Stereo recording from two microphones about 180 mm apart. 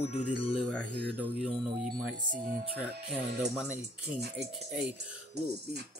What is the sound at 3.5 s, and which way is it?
Speech, centre (ahead or behind).